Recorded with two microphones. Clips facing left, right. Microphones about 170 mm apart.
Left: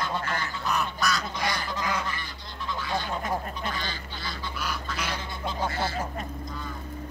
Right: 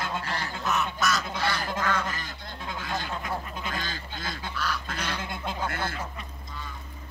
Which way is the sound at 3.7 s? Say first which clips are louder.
Even; 45° right (ahead or behind).